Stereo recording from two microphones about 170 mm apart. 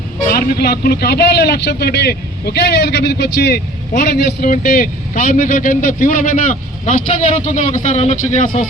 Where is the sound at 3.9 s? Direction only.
55° left (ahead or behind).